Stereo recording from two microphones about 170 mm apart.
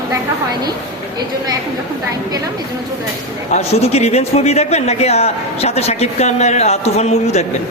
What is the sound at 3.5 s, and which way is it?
A man's voice, 40° left (ahead or behind).